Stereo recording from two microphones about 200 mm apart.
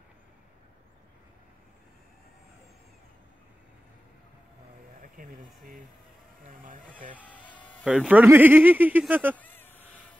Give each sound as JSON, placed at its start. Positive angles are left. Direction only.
{"t": 5.1, "sound": "speech", "side_deg": -45}
{"t": 7.8, "sound": "speech", "side_deg": -5}
{"t": 9.4, "sound": "a sound", "side_deg": 10}